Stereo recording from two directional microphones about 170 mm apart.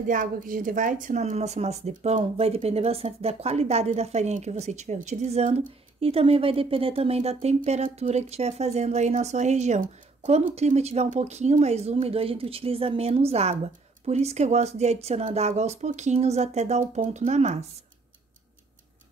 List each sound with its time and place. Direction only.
0.0 s speech: 50° right (ahead or behind)